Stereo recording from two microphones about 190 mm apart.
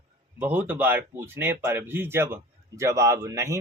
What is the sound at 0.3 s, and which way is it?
Speech, 10° right (ahead or behind).